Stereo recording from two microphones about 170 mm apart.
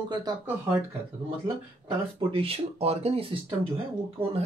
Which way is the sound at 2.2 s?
35° right (ahead or behind).